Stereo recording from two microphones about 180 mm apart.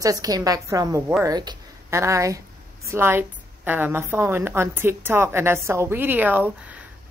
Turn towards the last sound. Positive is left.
turn(degrees=-10)  # may be behind; listen again after turning